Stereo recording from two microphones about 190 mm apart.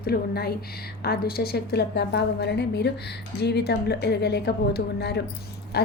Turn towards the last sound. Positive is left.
turn(degrees=60)  # may be behind; listen again after turning